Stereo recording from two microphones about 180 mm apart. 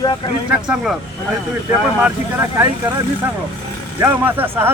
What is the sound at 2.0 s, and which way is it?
Speech, 10° right (ahead or behind).